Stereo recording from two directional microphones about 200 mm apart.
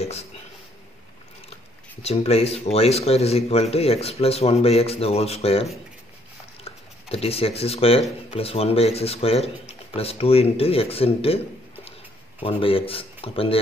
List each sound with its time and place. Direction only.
0.0 s speech: 30° left (ahead or behind)
2.0 s speech: 30° left (ahead or behind)
7.1 s speech: 30° left (ahead or behind)
12.4 s speech: 30° left (ahead or behind)